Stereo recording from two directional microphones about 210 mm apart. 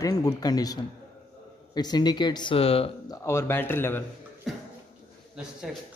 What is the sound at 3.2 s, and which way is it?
Speech, 10° left (ahead or behind).